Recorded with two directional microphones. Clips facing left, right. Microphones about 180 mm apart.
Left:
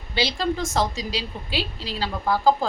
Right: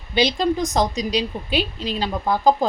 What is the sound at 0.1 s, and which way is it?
A woman's voice, 20° right (ahead or behind).